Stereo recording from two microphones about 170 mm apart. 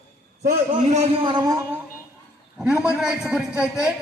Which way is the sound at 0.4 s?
50° right (ahead or behind).